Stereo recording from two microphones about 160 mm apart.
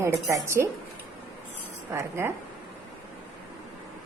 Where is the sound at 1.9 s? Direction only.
15° right (ahead or behind).